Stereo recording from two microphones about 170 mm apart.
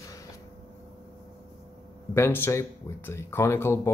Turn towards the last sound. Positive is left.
turn(degrees=15)  # may be behind; listen again after turning